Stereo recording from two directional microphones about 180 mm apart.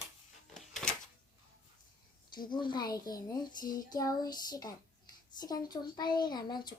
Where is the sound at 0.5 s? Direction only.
5° left (ahead or behind).